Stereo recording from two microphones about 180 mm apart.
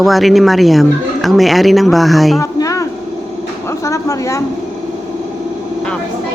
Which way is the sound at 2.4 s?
20° left (ahead or behind).